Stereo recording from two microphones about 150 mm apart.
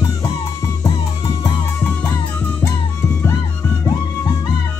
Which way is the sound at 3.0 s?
15° left (ahead or behind).